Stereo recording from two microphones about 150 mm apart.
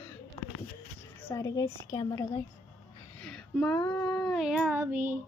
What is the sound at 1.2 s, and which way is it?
Speech, 20° left (ahead or behind).